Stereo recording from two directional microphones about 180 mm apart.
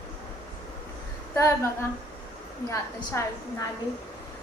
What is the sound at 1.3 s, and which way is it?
Speech, 15° left (ahead or behind).